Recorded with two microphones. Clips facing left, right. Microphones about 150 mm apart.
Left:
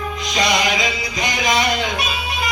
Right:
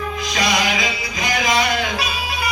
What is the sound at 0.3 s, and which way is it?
Music, 20° left (ahead or behind).